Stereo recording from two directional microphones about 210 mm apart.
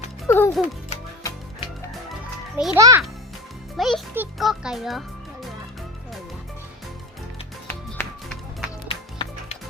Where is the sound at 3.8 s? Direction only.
5° right (ahead or behind).